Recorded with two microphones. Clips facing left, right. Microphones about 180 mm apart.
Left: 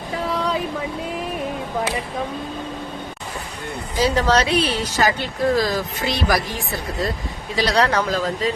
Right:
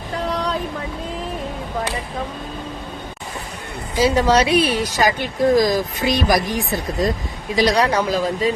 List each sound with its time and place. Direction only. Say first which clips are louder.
0.3 s vehicle: even; 5° left (ahead or behind)
3.9 s a woman's voice: right 3 dB; 10° right (ahead or behind)